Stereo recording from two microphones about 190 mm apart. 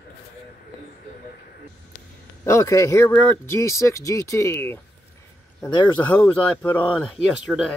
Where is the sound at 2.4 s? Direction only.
15° left (ahead or behind).